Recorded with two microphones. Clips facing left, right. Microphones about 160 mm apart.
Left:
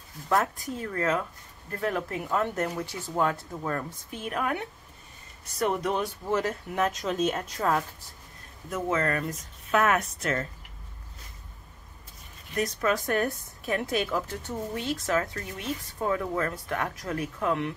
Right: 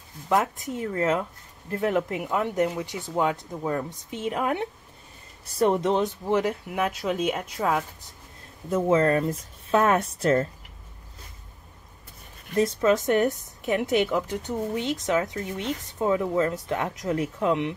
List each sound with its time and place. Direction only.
0.3 s a woman's voice: 20° right (ahead or behind)
8.6 s speech: 30° right (ahead or behind)
12.5 s a woman's voice: 25° right (ahead or behind)